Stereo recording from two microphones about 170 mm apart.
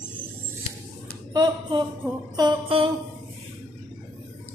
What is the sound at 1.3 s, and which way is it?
Speech, 25° right (ahead or behind).